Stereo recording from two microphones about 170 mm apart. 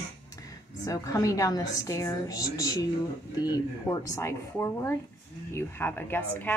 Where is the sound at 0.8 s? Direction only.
20° left (ahead or behind).